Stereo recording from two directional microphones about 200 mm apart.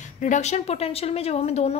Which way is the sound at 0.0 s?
35° left (ahead or behind).